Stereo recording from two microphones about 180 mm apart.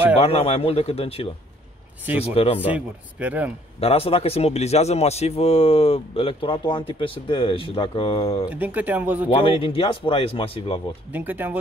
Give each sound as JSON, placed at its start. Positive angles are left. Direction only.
{"t": 0.2, "sound": "a man's voice", "side_deg": 35}
{"t": 2.3, "sound": "a man's voice", "side_deg": 30}
{"t": 2.6, "sound": "speech", "side_deg": -10}
{"t": 3.8, "sound": "a man's voice", "side_deg": 35}
{"t": 8.5, "sound": "speech", "side_deg": -10}
{"t": 9.3, "sound": "a man's voice", "side_deg": 30}
{"t": 11.1, "sound": "speech", "side_deg": -10}